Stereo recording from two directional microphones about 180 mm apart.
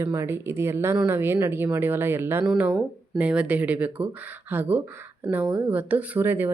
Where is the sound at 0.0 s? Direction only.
15° right (ahead or behind).